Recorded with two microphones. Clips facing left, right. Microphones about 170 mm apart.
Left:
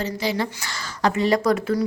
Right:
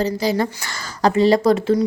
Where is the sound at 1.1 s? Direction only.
30° right (ahead or behind).